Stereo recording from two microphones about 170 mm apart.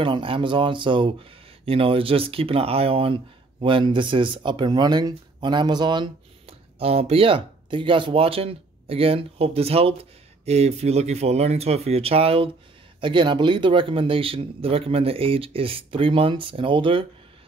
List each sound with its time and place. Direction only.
0.0 s speech: 30° right (ahead or behind)